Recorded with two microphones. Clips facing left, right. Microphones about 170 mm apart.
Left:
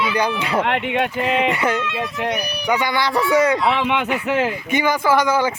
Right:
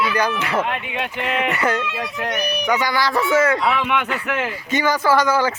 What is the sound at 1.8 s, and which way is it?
Speech, 10° right (ahead or behind).